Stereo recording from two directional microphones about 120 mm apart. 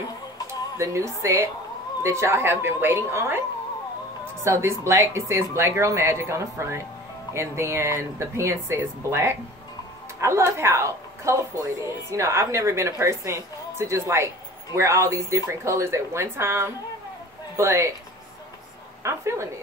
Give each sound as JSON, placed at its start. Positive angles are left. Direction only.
{"t": 0.5, "sound": "a woman's voice", "side_deg": -25}
{"t": 19.0, "sound": "a woman's voice", "side_deg": -25}